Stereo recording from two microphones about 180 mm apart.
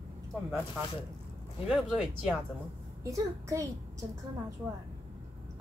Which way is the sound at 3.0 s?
20° right (ahead or behind).